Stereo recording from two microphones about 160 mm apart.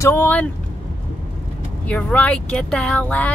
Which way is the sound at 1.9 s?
10° left (ahead or behind).